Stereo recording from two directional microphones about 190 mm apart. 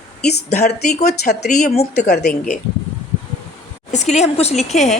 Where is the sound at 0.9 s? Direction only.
40° left (ahead or behind).